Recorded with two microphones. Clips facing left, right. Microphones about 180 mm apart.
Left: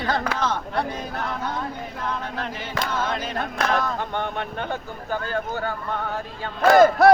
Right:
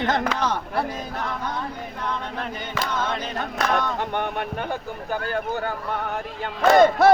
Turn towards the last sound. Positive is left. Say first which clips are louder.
# left 1 dB
turn(degrees=0)  # may be behind; listen again after turning